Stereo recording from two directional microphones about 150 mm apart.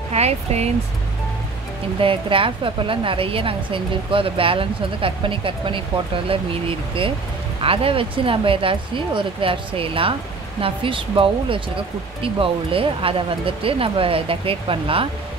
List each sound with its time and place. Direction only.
0.1 s speech: 45° right (ahead or behind)
2.0 s a woman's voice: 35° right (ahead or behind)